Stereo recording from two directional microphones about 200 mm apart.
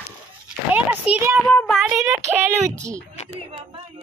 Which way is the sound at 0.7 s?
5° right (ahead or behind).